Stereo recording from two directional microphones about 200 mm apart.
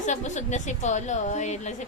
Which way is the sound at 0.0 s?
35° left (ahead or behind).